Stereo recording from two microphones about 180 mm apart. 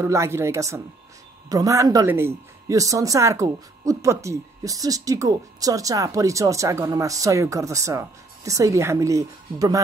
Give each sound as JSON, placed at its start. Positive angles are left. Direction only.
{"t": 0.0, "sound": "speech", "side_deg": -15}